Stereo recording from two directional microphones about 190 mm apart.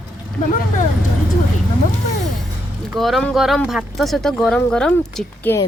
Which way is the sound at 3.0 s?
Centre (ahead or behind).